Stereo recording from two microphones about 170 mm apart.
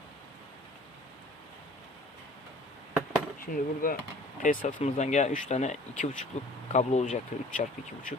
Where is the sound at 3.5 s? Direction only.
55° left (ahead or behind).